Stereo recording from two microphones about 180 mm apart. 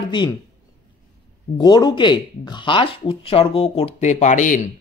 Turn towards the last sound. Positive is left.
turn(degrees=45)  # may be behind; listen again after turning